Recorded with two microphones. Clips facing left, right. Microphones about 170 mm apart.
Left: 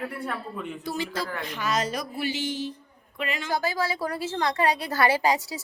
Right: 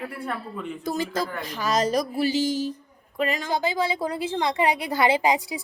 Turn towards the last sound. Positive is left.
turn(degrees=-15)  # may be behind; listen again after turning